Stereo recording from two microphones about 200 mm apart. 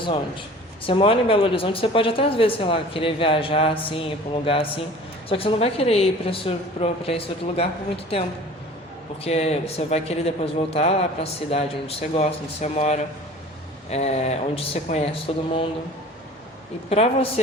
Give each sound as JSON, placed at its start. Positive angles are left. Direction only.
{"t": 0.9, "sound": "a woman's voice", "side_deg": 25}
{"t": 9.2, "sound": "speech", "side_deg": 30}
{"t": 16.9, "sound": "speech", "side_deg": 30}